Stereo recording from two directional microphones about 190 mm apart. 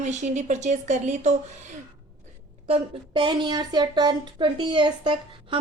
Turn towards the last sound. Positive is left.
turn(degrees=-25)  # may be behind; listen again after turning